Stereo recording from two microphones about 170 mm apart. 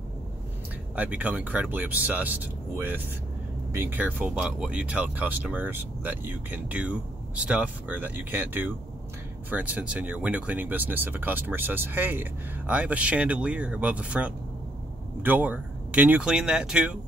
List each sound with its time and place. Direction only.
0.9 s speech: 10° right (ahead or behind)